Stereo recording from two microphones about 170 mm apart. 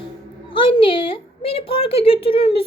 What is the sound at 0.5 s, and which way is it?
A woman's voice, 30° left (ahead or behind).